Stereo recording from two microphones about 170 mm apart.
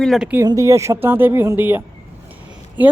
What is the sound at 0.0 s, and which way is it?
Speech, centre (ahead or behind).